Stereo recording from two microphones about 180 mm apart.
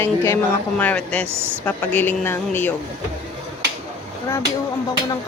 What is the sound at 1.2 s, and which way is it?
Speech, 10° right (ahead or behind).